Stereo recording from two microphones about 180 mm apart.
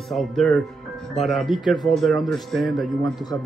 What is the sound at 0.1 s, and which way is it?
Speech, centre (ahead or behind).